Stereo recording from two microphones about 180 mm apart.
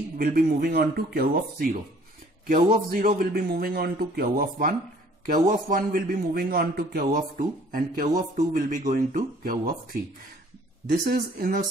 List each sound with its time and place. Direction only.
0.2 s a man's voice: 55° right (ahead or behind)
10.9 s a man's voice: 55° right (ahead or behind)